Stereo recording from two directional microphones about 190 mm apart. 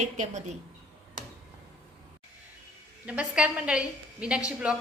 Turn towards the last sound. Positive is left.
turn(degrees=-5)  # may be behind; listen again after turning